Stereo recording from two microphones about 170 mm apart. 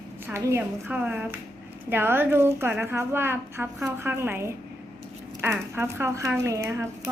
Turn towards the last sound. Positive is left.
turn(degrees=-15)  # may be behind; listen again after turning